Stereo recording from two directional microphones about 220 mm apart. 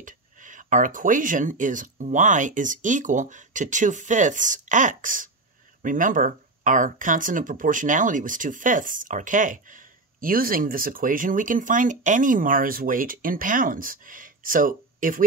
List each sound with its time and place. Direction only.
0.0 s speech: 35° right (ahead or behind)